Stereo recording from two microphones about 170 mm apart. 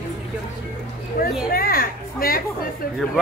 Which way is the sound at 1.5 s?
60° left (ahead or behind).